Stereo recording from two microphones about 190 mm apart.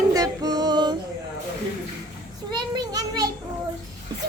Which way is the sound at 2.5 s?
20° right (ahead or behind).